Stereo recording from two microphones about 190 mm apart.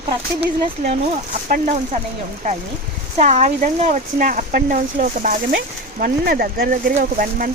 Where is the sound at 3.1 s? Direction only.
35° right (ahead or behind).